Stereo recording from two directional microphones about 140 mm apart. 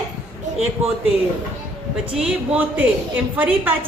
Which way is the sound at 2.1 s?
10° right (ahead or behind).